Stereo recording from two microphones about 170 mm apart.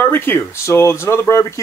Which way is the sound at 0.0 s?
10° left (ahead or behind).